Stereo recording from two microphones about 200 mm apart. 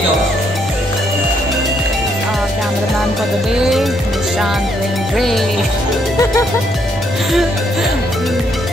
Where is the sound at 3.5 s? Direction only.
5° right (ahead or behind).